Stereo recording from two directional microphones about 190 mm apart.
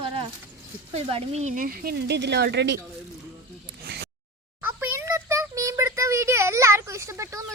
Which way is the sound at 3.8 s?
60° right (ahead or behind).